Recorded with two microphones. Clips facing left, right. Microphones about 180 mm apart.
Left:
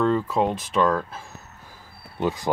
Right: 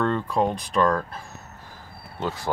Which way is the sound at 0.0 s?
5° left (ahead or behind).